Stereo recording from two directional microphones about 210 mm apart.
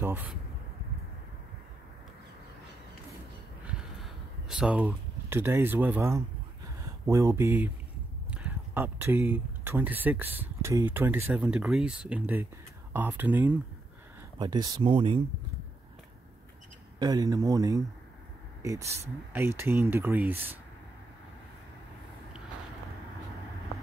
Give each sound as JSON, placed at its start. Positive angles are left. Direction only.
{"t": 0.0, "sound": "speech", "side_deg": -10}
{"t": 3.6, "sound": "a sound", "side_deg": -5}
{"t": 6.8, "sound": "speech", "side_deg": -15}
{"t": 14.4, "sound": "speech", "side_deg": -20}
{"t": 17.0, "sound": "speech", "side_deg": -20}